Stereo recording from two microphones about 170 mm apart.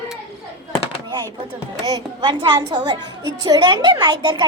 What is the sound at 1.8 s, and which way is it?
A woman's voice, 25° right (ahead or behind).